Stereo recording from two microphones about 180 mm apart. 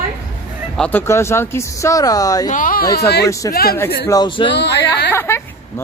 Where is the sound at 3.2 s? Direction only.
20° left (ahead or behind).